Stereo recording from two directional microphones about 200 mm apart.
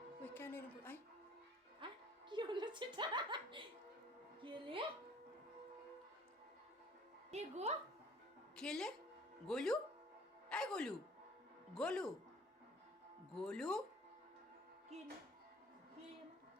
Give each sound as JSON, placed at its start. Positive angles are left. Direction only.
{"t": 0.3, "sound": "speech", "side_deg": 10}
{"t": 1.8, "sound": "music", "side_deg": -25}
{"t": 2.3, "sound": "chuckle", "side_deg": -25}
{"t": 4.4, "sound": "a sound", "side_deg": -25}
{"t": 7.3, "sound": "a woman's voice", "side_deg": -35}
{"t": 8.5, "sound": "a woman's voice", "side_deg": 5}
{"t": 10.5, "sound": "music", "side_deg": 5}
{"t": 11.7, "sound": "speech", "side_deg": 5}
{"t": 13.3, "sound": "speech", "side_deg": 5}